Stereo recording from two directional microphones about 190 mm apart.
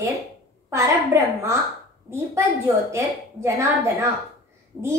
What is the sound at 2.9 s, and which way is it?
A woman's voice, 15° right (ahead or behind).